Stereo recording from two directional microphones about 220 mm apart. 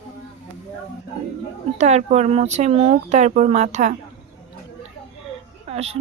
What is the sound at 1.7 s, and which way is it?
Speech, 30° right (ahead or behind).